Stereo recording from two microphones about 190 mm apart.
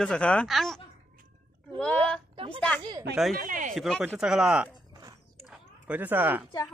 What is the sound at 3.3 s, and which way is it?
Speech, 45° right (ahead or behind).